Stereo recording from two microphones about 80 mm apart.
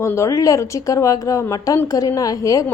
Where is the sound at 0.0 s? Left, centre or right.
Left.